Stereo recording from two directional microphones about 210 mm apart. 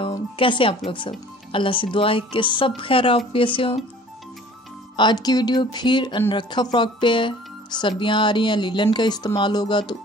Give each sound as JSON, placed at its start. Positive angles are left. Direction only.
{"t": 0.0, "sound": "speech", "side_deg": 25}
{"t": 4.9, "sound": "speech", "side_deg": 20}